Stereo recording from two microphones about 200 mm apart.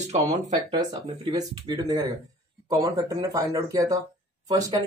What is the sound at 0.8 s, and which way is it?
Speech, 20° right (ahead or behind).